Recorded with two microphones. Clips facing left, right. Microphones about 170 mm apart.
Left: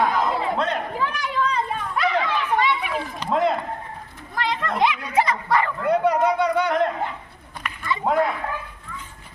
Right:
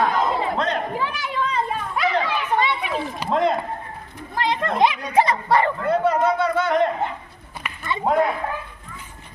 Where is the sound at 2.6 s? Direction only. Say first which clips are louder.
Even; 25° right (ahead or behind).